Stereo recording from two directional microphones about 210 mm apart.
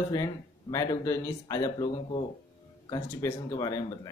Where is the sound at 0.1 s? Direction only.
15° left (ahead or behind).